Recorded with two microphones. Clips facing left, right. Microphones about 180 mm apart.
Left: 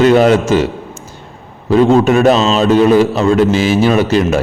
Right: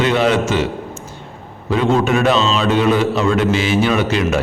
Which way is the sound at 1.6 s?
40° left (ahead or behind).